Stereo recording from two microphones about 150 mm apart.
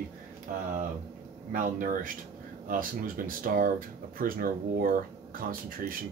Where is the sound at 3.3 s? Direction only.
70° right (ahead or behind).